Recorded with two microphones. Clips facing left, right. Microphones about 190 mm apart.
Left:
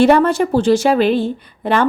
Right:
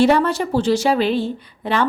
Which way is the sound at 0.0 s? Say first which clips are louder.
Left 4 dB; 55° left (ahead or behind).